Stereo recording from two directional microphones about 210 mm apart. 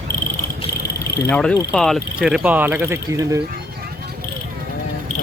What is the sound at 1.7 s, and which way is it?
Speech, centre (ahead or behind).